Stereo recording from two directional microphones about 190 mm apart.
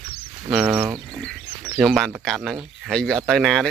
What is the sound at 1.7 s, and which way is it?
Speech, centre (ahead or behind).